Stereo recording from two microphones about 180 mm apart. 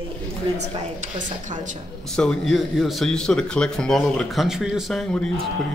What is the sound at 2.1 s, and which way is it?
Speech, 5° left (ahead or behind).